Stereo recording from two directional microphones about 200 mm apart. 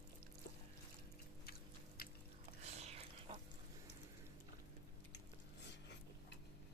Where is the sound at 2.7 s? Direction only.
30° right (ahead or behind).